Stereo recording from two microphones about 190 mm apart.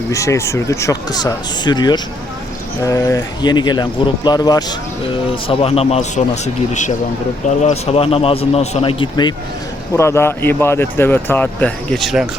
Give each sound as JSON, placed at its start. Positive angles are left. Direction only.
{"t": 0.1, "sound": "a man's voice", "side_deg": 15}
{"t": 9.9, "sound": "speech", "side_deg": 15}